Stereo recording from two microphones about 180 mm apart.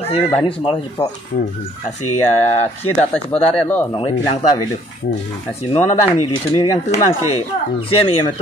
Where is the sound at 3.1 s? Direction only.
5° left (ahead or behind).